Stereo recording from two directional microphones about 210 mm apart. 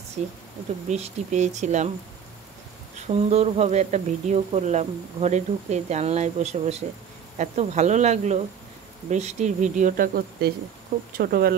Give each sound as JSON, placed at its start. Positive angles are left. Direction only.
{"t": 0.2, "sound": "speech", "side_deg": -35}
{"t": 3.1, "sound": "speech", "side_deg": -30}